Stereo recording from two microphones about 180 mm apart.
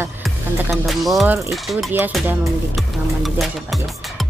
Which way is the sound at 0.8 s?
Centre (ahead or behind).